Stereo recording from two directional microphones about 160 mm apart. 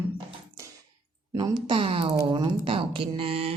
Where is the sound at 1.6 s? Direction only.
30° right (ahead or behind).